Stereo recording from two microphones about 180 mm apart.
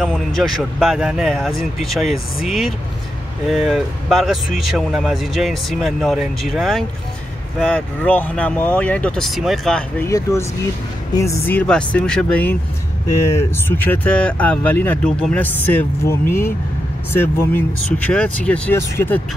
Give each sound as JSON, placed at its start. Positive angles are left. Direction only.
{"t": 0.4, "sound": "speech", "side_deg": 0}
{"t": 10.0, "sound": "speech", "side_deg": 15}